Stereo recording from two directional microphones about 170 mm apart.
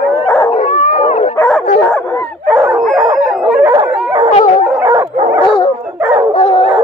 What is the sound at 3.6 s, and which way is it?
Dog, 25° right (ahead or behind).